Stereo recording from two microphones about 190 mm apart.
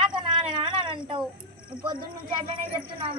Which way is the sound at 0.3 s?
25° right (ahead or behind).